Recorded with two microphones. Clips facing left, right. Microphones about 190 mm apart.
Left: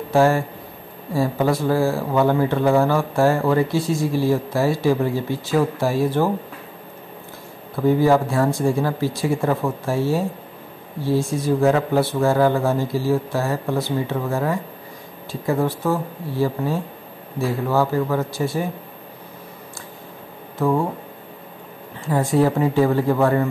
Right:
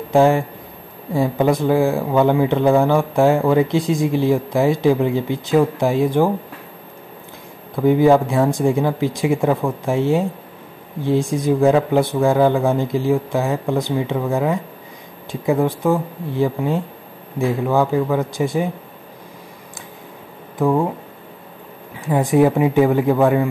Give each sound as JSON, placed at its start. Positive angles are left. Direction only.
{"t": 0.1, "sound": "speech", "side_deg": -15}
{"t": 7.7, "sound": "speech", "side_deg": -15}
{"t": 20.5, "sound": "speech", "side_deg": -15}
{"t": 22.0, "sound": "speech", "side_deg": -15}